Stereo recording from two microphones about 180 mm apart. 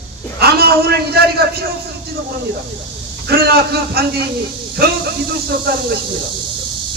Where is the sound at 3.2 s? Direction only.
60° right (ahead or behind).